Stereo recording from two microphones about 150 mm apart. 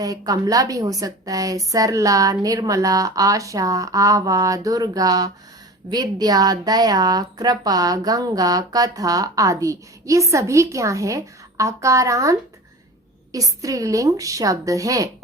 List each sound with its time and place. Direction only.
0.0 s a woman's voice: 25° right (ahead or behind)